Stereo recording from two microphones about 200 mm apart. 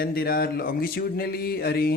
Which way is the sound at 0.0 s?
50° left (ahead or behind).